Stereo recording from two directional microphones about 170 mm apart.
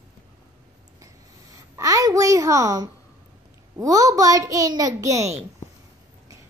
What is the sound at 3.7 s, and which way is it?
A child's voice, 20° right (ahead or behind).